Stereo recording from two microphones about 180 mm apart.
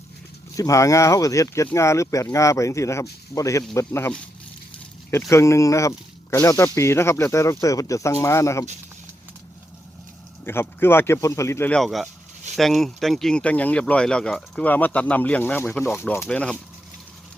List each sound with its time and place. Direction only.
0.5 s speech: 20° left (ahead or behind)
5.3 s speech: 15° left (ahead or behind)
10.4 s speech: 15° left (ahead or behind)